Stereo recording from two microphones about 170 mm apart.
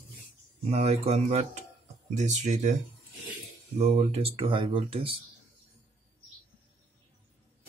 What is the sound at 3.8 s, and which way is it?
Speech, 40° right (ahead or behind).